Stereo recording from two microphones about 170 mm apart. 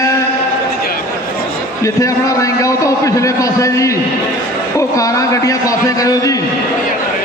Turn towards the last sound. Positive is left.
turn(degrees=20)  # may be behind; listen again after turning